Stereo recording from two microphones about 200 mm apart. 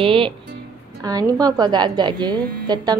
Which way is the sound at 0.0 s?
25° right (ahead or behind).